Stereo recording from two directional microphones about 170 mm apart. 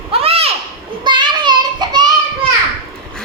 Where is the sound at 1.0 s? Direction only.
25° right (ahead or behind).